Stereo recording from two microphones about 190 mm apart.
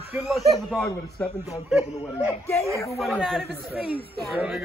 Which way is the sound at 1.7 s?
10° right (ahead or behind).